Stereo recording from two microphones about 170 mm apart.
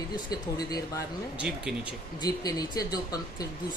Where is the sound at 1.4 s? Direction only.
5° right (ahead or behind).